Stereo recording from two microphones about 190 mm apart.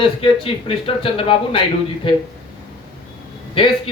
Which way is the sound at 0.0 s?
30° left (ahead or behind).